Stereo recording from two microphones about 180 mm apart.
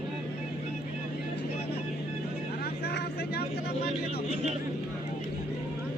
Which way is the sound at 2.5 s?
60° left (ahead or behind).